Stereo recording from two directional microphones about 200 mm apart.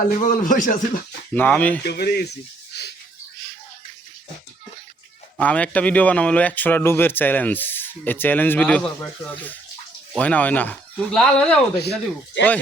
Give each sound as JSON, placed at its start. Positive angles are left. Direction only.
{"t": 0.1, "sound": "speech", "side_deg": 40}
{"t": 1.3, "sound": "speech", "side_deg": 10}
{"t": 1.8, "sound": "speech", "side_deg": 55}
{"t": 5.4, "sound": "speech", "side_deg": 5}
{"t": 11.8, "sound": "speech", "side_deg": 60}